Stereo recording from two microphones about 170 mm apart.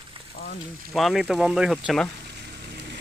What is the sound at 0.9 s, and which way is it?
Speech, centre (ahead or behind).